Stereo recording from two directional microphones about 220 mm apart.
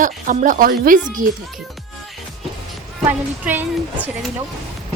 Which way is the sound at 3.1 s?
10° right (ahead or behind).